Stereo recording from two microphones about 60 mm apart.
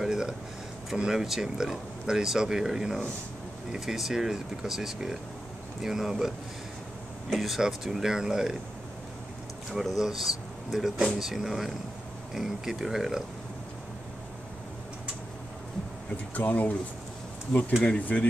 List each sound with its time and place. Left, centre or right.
0.0 s a sound: centre
0.9 s speech: centre
7.3 s speech: centre
9.7 s speech: centre
16.3 s speech: left